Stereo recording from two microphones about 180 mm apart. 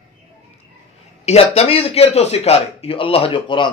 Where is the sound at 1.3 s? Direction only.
35° left (ahead or behind).